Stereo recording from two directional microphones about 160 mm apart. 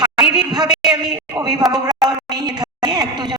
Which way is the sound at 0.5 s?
25° right (ahead or behind).